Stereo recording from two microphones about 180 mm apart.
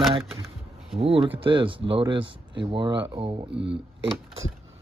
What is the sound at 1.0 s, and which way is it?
Speech, 30° right (ahead or behind).